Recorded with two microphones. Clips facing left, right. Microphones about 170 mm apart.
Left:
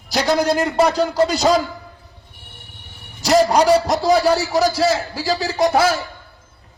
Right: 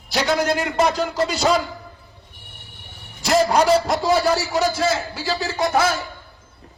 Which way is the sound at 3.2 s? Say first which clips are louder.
Left 3 dB; 40° left (ahead or behind).